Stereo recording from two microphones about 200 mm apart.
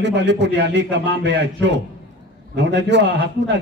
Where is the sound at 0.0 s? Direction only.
60° right (ahead or behind).